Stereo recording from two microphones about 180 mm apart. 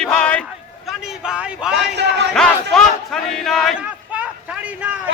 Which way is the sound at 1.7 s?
70° right (ahead or behind).